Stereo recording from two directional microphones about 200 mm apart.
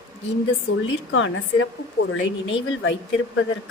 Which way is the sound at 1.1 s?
70° left (ahead or behind).